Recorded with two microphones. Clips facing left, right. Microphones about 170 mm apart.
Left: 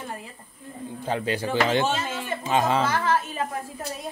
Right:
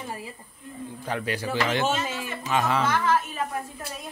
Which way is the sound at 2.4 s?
25° left (ahead or behind).